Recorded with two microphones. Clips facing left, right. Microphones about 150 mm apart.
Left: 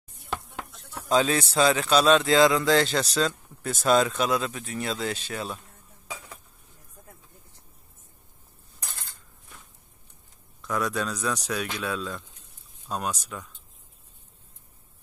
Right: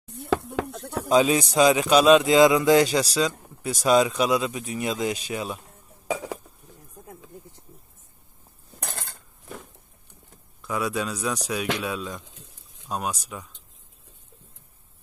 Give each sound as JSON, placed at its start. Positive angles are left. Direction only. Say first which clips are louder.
{"t": 0.0, "sound": "chopping", "louder": "right 10 dB", "side_deg": -70}
{"t": 1.0, "sound": "speech", "louder": "right 3 dB", "side_deg": -10}
{"t": 6.0, "sound": "speech", "louder": "right 13 dB", "side_deg": -85}
{"t": 8.7, "sound": "cutlery", "louder": "right 8 dB", "side_deg": -65}
{"t": 10.6, "sound": "speech", "louder": "right 1 dB", "side_deg": -5}
{"t": 12.3, "sound": "a sound", "louder": "right 6 dB", "side_deg": -90}
{"t": 12.8, "sound": "speech", "louder": "right 1 dB", "side_deg": -10}